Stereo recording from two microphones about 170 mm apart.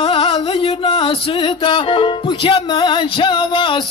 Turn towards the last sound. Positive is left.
turn(degrees=30)  # may be behind; listen again after turning